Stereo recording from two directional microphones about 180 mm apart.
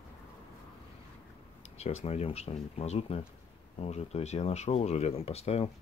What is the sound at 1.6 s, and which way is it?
Speech, 35° left (ahead or behind).